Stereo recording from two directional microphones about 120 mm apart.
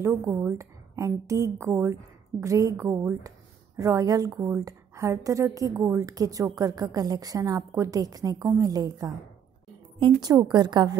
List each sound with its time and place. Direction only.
0.0 s a woman's voice: 20° right (ahead or behind)
9.9 s a woman's voice: 40° right (ahead or behind)